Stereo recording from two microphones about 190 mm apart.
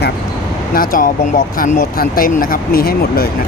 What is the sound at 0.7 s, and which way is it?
Speech, 45° left (ahead or behind).